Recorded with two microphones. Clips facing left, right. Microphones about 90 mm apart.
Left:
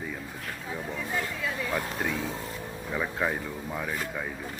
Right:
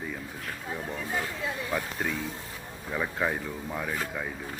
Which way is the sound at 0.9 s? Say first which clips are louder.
Left 1 dB; 35° right (ahead or behind).